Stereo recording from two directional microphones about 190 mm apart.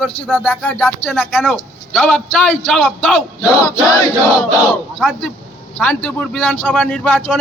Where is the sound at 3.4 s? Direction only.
20° left (ahead or behind).